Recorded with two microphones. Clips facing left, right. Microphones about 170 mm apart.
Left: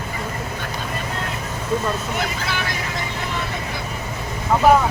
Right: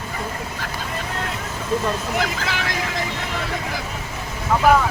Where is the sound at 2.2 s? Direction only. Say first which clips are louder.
Right 1 dB; 90° right.